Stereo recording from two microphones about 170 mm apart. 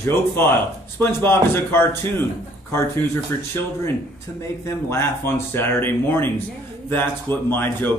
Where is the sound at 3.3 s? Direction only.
15° left (ahead or behind).